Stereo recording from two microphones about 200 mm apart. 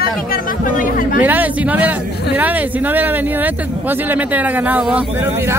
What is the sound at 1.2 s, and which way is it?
Speech, 10° right (ahead or behind).